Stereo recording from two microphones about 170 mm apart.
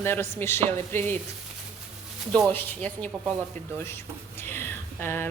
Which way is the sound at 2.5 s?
10° left (ahead or behind).